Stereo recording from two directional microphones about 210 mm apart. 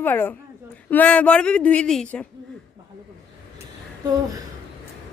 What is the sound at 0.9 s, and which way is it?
Speech, 5° left (ahead or behind).